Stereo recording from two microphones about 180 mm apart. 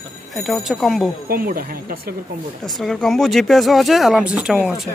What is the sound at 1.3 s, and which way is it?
Speech, 55° right (ahead or behind).